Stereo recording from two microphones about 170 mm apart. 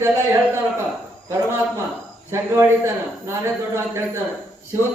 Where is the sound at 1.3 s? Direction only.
15° right (ahead or behind).